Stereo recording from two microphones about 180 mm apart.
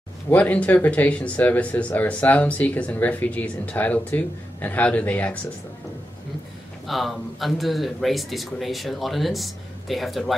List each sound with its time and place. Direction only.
0.3 s speech: 10° left (ahead or behind)
6.9 s speech: centre (ahead or behind)